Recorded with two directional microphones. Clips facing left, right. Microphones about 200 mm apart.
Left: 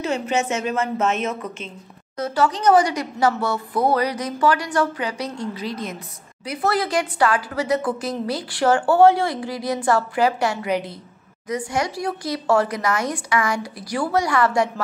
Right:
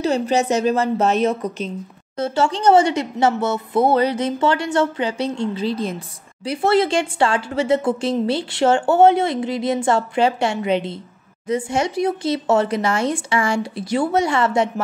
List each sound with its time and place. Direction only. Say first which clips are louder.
0.0 s a woman's voice: right 4 dB; 35° right (ahead or behind)